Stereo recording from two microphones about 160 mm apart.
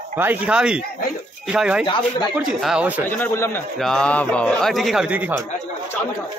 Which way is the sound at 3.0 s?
10° left (ahead or behind).